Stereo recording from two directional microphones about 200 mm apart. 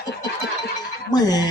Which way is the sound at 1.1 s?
20° left (ahead or behind).